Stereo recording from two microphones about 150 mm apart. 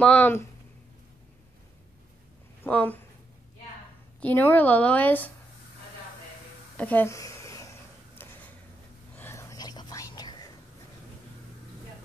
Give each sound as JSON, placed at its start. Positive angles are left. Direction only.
{"t": 0.0, "sound": "a woman's voice", "side_deg": 10}
{"t": 2.6, "sound": "a woman's voice", "side_deg": 10}
{"t": 4.2, "sound": "a woman's voice", "side_deg": 15}
{"t": 6.8, "sound": "a sound", "side_deg": 10}
{"t": 9.1, "sound": "whispering", "side_deg": 15}